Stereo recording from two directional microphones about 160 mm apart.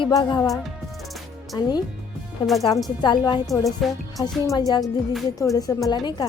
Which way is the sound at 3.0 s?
25° left (ahead or behind).